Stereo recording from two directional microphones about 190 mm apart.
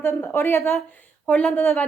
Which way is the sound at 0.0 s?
10° left (ahead or behind).